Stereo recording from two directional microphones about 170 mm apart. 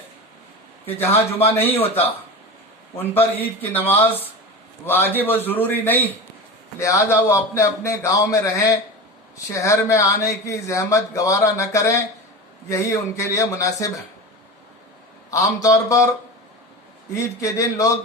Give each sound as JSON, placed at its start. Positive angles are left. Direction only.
{"t": 1.1, "sound": "a man's voice", "side_deg": 35}
{"t": 1.5, "sound": "speech", "side_deg": 10}
{"t": 3.0, "sound": "speech", "side_deg": 10}
{"t": 15.3, "sound": "a man's voice", "side_deg": 20}
{"t": 17.1, "sound": "a man's voice", "side_deg": 20}